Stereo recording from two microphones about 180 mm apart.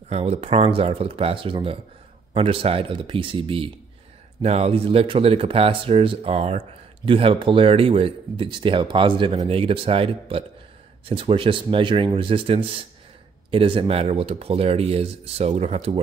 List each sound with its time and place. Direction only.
0.1 s speech: 35° right (ahead or behind)